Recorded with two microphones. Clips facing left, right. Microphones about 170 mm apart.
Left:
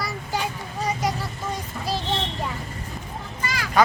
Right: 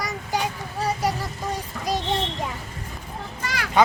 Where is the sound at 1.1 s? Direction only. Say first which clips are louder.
Right 1 dB; 15° right (ahead or behind).